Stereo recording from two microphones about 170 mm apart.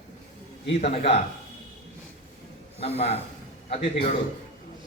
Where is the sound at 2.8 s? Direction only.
35° left (ahead or behind).